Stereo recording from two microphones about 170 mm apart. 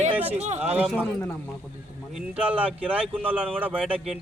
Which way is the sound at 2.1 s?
5° right (ahead or behind).